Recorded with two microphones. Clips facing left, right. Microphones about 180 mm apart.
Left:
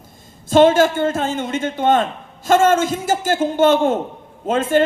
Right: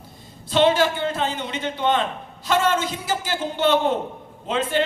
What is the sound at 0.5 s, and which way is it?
A man's voice, 45° left (ahead or behind).